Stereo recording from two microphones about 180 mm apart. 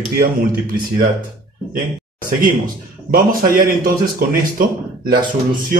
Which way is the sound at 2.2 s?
50° right (ahead or behind).